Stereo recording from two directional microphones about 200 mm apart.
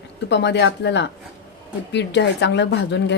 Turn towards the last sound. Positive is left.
turn(degrees=60)  # may be behind; listen again after turning